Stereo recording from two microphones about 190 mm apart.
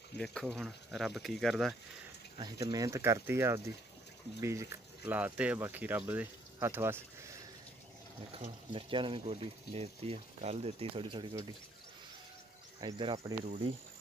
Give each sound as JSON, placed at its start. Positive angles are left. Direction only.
{"t": 0.2, "sound": "speech", "side_deg": 5}
{"t": 2.3, "sound": "speech", "side_deg": -25}
{"t": 8.3, "sound": "speech", "side_deg": -30}
{"t": 12.8, "sound": "speech", "side_deg": -25}